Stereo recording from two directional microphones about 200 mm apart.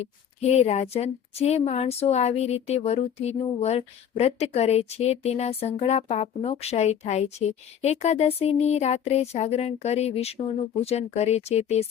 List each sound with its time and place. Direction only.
0.0 s speech: 30° left (ahead or behind)